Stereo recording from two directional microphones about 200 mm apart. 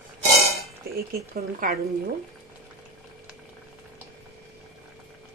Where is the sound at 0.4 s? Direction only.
30° right (ahead or behind).